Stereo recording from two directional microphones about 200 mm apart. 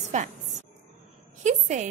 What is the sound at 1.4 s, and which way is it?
Speech, 35° right (ahead or behind).